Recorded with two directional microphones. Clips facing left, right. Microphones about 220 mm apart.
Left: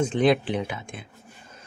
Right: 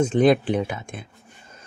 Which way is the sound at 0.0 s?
45° right (ahead or behind).